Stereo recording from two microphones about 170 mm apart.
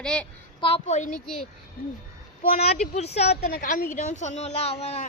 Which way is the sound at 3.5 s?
55° left (ahead or behind).